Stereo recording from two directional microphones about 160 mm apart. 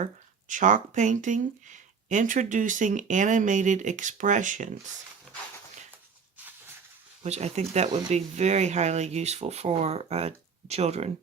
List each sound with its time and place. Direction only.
0.0 s speech: 50° right (ahead or behind)
7.2 s speech: 45° right (ahead or behind)